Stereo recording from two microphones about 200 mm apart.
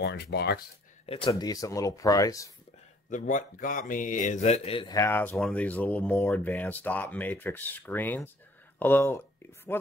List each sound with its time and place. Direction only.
0.0 s speech: 55° left (ahead or behind)
1.0 s speech: 25° left (ahead or behind)
3.1 s speech: 40° left (ahead or behind)
4.9 s speech: 10° left (ahead or behind)